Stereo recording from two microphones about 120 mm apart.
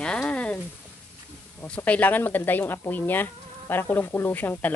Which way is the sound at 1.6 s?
10° left (ahead or behind).